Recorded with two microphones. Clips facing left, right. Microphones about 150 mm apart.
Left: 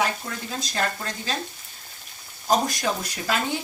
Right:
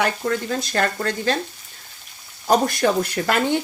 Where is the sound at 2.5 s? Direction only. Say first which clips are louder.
Right 5 dB; 60° right (ahead or behind).